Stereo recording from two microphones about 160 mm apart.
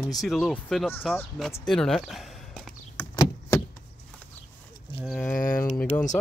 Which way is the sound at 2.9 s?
20° left (ahead or behind).